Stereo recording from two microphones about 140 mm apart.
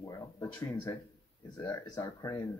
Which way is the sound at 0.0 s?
20° left (ahead or behind).